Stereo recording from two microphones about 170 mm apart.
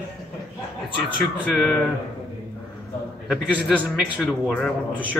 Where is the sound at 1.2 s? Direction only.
5° left (ahead or behind).